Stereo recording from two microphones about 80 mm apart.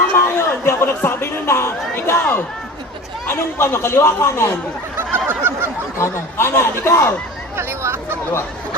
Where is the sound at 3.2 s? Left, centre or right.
Left.